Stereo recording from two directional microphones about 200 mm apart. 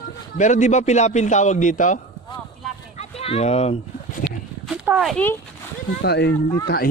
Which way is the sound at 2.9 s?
30° left (ahead or behind).